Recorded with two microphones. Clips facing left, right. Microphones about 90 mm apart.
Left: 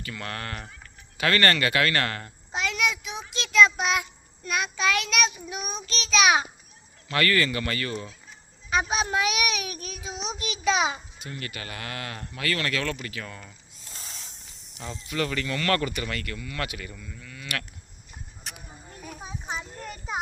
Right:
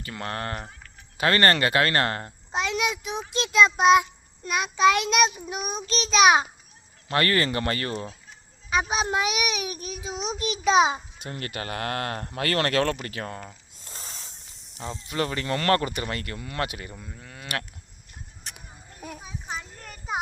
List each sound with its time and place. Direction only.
0.0 s a child's voice: 35° right (ahead or behind)
3.5 s child singing: 20° right (ahead or behind)
7.1 s a child's voice: 35° right (ahead or behind)
8.9 s child singing: 25° right (ahead or behind)
11.2 s a child's voice: 45° right (ahead or behind)
19.5 s children playing: 20° left (ahead or behind)